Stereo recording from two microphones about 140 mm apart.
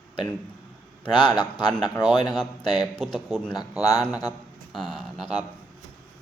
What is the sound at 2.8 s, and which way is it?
Speech, 5° left (ahead or behind).